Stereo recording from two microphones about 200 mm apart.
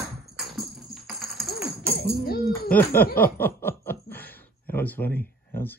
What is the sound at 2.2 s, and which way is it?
Speech, 50° left (ahead or behind).